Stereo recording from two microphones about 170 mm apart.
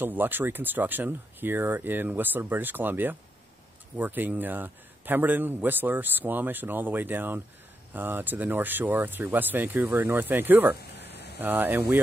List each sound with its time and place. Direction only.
0.0 s a man's voice: 10° right (ahead or behind)